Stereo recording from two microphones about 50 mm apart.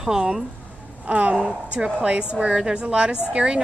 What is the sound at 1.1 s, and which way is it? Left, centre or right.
Speech, right.